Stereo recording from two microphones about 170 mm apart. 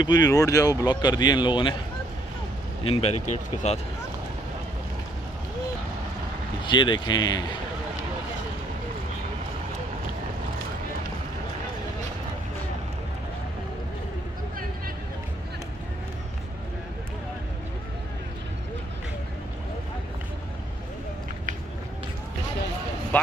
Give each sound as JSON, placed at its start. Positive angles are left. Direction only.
{"t": 0.0, "sound": "speech", "side_deg": 25}
{"t": 2.8, "sound": "speech", "side_deg": 35}
{"t": 6.6, "sound": "speech", "side_deg": 30}